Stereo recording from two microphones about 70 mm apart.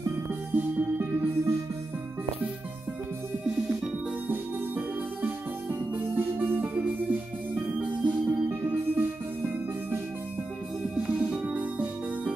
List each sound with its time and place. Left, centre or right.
0.6 s music: right
4.3 s music: right
8.5 s music: right
11.0 s music: centre